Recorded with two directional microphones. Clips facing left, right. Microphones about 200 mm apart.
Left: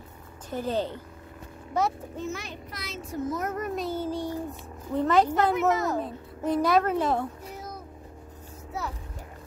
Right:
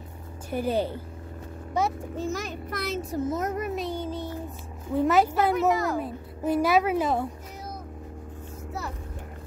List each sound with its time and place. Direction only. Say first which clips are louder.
0.5 s a woman's voice: right 2 dB; 10° right (ahead or behind)
2.1 s a child's voice: right 4 dB; 40° right (ahead or behind); by 3.0 s 55° right (ahead or behind)
3.3 s a child's voice: even; 25° right (ahead or behind)
3.5 s child singing: even; 5° right (ahead or behind); by 4.4 s 10° left (ahead or behind)
4.5 s speech: right 1 dB; 5° right (ahead or behind)
5.5 s speech: right 1 dB; 20° left (ahead or behind)
5.9 s a woman's voice: right 1 dB; 5° right (ahead or behind)